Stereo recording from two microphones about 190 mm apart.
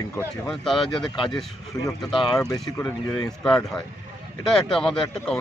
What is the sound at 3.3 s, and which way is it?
Speech, 5° left (ahead or behind).